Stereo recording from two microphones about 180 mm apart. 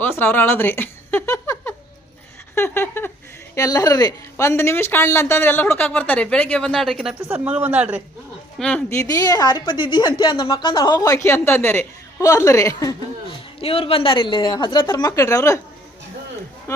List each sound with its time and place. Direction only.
0.0 s a sound: 10° left (ahead or behind)
3.5 s a woman's voice: 20° left (ahead or behind); by 8.0 s 10° right (ahead or behind)
8.5 s a woman's voice: 5° left (ahead or behind)
13.6 s a woman's voice: 30° left (ahead or behind); by 15.6 s 15° left (ahead or behind)
16.7 s a woman's voice: 15° left (ahead or behind)